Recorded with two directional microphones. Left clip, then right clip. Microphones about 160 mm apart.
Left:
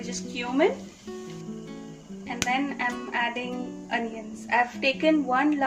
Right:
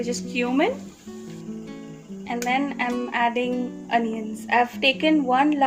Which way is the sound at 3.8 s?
80° right.